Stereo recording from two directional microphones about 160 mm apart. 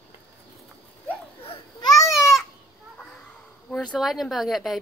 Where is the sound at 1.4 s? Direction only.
30° left (ahead or behind).